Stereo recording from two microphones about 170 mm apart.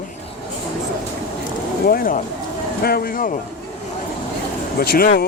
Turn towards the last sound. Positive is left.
turn(degrees=60)  # may be behind; listen again after turning